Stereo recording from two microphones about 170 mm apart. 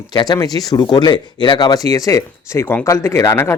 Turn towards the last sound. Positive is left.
turn(degrees=15)  # may be behind; listen again after turning